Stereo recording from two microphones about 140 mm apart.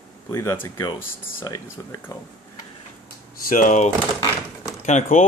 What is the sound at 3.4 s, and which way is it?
Speech, 75° left (ahead or behind).